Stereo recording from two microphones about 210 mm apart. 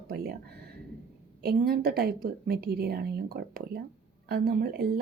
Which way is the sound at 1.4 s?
45° right (ahead or behind).